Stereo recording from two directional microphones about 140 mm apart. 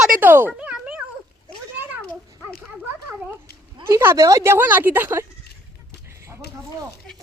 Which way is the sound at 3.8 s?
15° right (ahead or behind).